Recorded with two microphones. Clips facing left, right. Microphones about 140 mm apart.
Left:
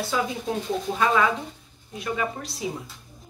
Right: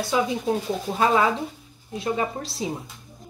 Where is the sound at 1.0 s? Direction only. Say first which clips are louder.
Right 2 dB; 30° right (ahead or behind).